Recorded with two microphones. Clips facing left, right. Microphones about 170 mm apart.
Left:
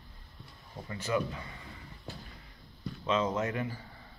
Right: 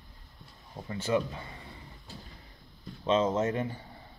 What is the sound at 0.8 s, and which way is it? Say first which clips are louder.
Speech: right 3 dB; 30° right (ahead or behind).